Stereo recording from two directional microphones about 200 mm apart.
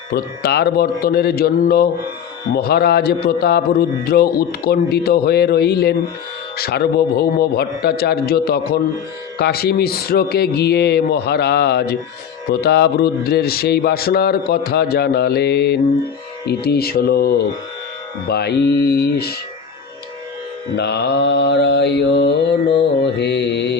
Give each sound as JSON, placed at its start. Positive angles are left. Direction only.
{"t": 0.1, "sound": "a man's voice", "side_deg": 55}
{"t": 20.7, "sound": "mantra", "side_deg": 55}